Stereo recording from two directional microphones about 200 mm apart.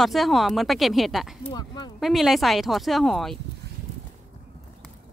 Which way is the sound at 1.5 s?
20° left (ahead or behind).